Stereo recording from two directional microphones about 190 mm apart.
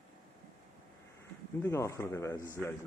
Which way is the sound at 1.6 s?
15° left (ahead or behind).